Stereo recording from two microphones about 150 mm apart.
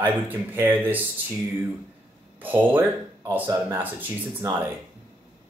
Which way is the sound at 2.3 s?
10° right (ahead or behind).